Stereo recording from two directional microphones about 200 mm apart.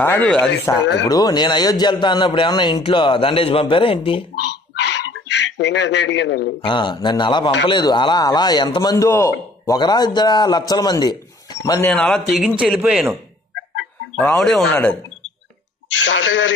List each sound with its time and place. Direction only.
0.0 s a man's voice: 10° left (ahead or behind); by 4.2 s 25° left (ahead or behind)
5.6 s a man's voice: 60° left (ahead or behind)
6.6 s a man's voice: 25° left (ahead or behind)
11.9 s speech: 5° left (ahead or behind)
14.1 s speech: 5° left (ahead or behind)
15.9 s a man's voice: 75° left (ahead or behind)